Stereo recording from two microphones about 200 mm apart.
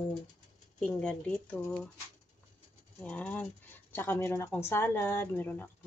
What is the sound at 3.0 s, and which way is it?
Speech, 5° left (ahead or behind).